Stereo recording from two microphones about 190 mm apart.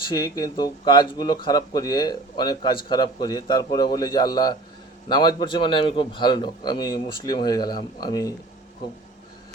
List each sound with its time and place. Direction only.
0.0 s speech: 20° left (ahead or behind)